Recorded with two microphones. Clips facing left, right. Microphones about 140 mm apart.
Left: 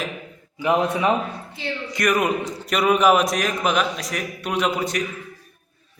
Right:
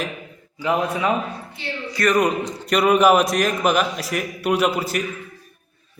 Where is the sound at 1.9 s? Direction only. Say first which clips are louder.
Right 2 dB; 15° left (ahead or behind).